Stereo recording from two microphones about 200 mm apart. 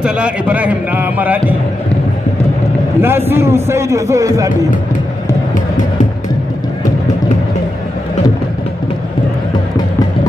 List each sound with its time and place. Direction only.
0.0 s a man's voice: 5° right (ahead or behind)
3.0 s a man's voice: 10° right (ahead or behind)